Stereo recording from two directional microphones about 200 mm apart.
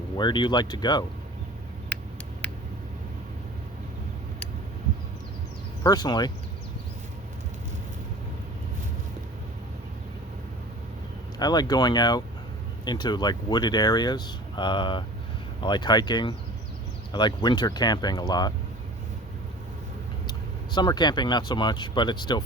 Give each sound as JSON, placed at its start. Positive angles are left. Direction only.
{"t": 0.2, "sound": "speech", "side_deg": 25}
{"t": 2.4, "sound": "a sound", "side_deg": 5}
{"t": 5.8, "sound": "speech", "side_deg": 20}
{"t": 11.3, "sound": "speech", "side_deg": 20}
{"t": 20.7, "sound": "speech", "side_deg": 20}